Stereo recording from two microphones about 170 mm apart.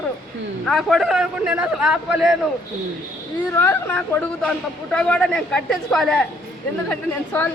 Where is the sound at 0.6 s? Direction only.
Centre (ahead or behind).